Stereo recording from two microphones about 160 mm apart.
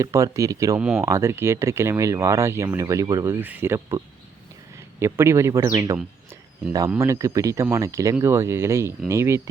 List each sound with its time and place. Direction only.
0.0 s speech: 20° right (ahead or behind)
0.8 s speech: 5° right (ahead or behind)
1.0 s speech: 15° right (ahead or behind)